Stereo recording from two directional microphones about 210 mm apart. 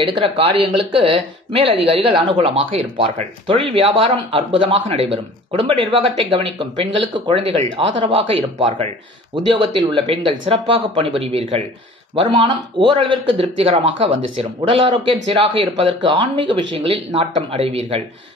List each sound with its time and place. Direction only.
0.1 s speech: 25° right (ahead or behind)
7.2 s speech: 25° right (ahead or behind)